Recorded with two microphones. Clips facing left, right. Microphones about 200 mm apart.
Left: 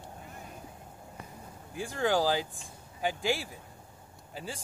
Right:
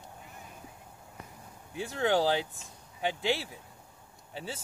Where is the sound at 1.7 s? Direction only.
25° right (ahead or behind).